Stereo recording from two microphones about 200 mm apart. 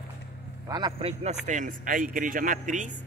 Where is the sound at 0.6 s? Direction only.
20° right (ahead or behind).